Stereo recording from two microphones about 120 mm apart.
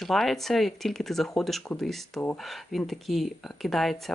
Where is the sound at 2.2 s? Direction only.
15° left (ahead or behind).